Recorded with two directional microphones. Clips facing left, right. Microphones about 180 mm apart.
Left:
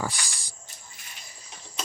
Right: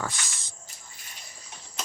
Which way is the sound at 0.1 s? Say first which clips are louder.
Left 1 dB; 20° right (ahead or behind).